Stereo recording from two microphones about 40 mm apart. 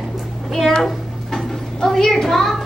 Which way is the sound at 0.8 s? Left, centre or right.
Centre.